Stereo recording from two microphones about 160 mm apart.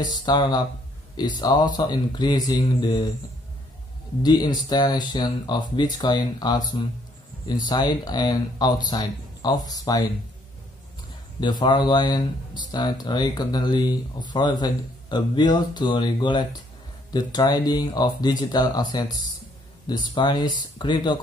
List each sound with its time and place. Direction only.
0.1 s speech: 25° left (ahead or behind)
4.2 s speech: 25° left (ahead or behind)
11.4 s speech: 25° left (ahead or behind)